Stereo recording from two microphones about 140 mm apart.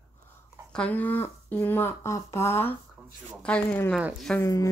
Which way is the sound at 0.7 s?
10° left (ahead or behind).